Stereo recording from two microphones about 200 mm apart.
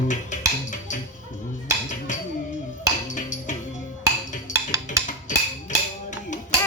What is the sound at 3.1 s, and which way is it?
Music, 40° left (ahead or behind).